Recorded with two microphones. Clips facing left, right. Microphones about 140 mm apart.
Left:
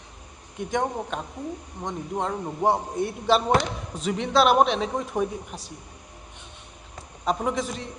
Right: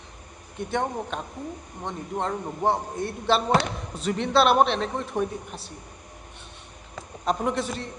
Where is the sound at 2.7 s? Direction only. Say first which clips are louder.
Left 2 dB; 20° left (ahead or behind).